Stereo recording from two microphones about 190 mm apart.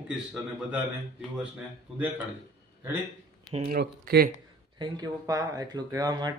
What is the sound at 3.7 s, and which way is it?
Speech, 55° right (ahead or behind).